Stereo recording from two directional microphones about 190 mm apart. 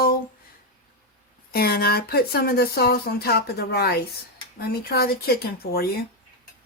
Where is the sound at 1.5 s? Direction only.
55° left (ahead or behind).